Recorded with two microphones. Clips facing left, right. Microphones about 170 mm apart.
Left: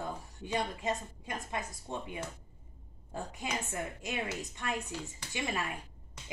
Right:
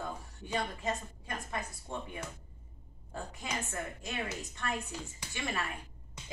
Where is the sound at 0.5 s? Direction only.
20° left (ahead or behind).